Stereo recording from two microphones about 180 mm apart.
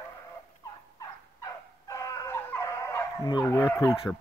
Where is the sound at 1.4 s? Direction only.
20° left (ahead or behind).